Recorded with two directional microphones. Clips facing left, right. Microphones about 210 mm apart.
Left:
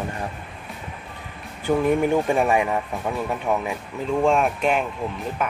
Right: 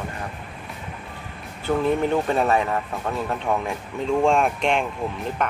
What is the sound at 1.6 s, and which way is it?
Speech, 15° left (ahead or behind).